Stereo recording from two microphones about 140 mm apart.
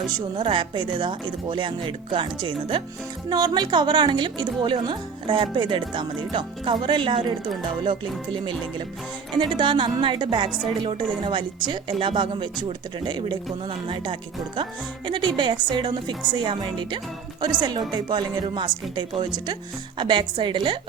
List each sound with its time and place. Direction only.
0.1 s a woman's voice: 35° right (ahead or behind)